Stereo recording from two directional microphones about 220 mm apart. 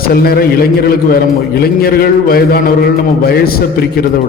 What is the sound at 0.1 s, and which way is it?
A man's voice, 45° left (ahead or behind).